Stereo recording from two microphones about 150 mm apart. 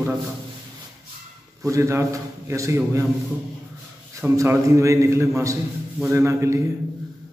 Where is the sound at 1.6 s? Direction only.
20° right (ahead or behind).